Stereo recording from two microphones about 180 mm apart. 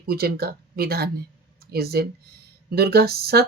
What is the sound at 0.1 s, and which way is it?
A woman's voice, 60° right (ahead or behind).